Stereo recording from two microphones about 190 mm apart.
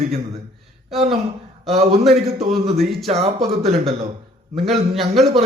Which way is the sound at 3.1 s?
40° right (ahead or behind).